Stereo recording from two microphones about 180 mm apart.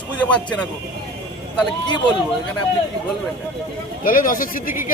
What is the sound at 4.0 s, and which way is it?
Speech, 50° left (ahead or behind).